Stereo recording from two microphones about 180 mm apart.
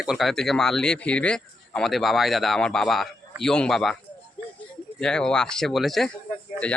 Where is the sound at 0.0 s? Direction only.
Centre (ahead or behind).